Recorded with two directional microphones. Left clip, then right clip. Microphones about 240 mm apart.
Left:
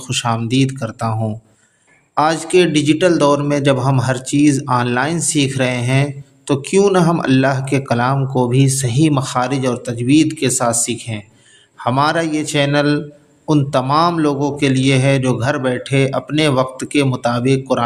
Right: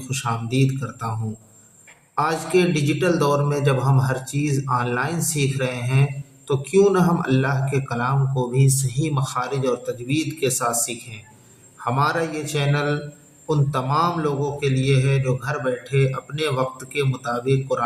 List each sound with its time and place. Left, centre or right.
0.1 s speech: left
2.1 s speech: left